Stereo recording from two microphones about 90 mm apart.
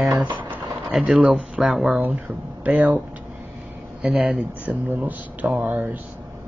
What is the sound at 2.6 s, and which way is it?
Speech, 15° right (ahead or behind).